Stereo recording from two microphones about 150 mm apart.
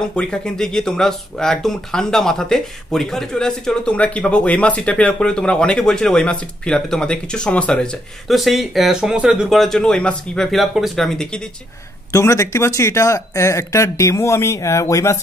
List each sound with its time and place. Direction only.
0.0 s speech: 5° left (ahead or behind)
12.1 s speech: 20° left (ahead or behind)